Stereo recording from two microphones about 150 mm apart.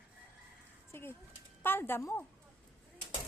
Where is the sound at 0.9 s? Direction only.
15° left (ahead or behind).